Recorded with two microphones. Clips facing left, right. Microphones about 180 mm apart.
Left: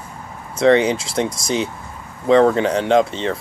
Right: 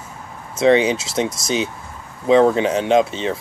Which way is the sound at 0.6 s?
25° right (ahead or behind).